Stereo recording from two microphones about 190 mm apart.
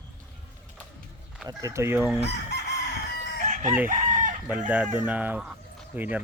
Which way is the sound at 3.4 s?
40° right (ahead or behind).